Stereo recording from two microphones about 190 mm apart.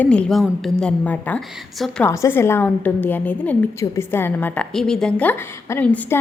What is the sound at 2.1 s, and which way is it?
A woman's voice, 15° left (ahead or behind).